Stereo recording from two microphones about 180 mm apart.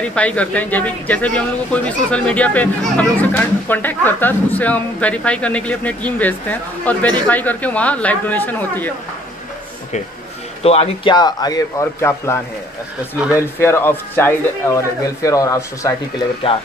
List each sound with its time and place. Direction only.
0.0 s speech: 5° left (ahead or behind)
10.6 s speech: 35° left (ahead or behind)
11.1 s a man's voice: 20° left (ahead or behind)
13.6 s speech: 15° left (ahead or behind)